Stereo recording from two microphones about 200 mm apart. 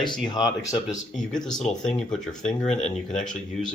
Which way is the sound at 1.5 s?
Centre (ahead or behind).